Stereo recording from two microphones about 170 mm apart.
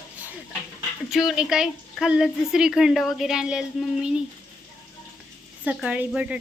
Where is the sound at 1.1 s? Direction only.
Centre (ahead or behind).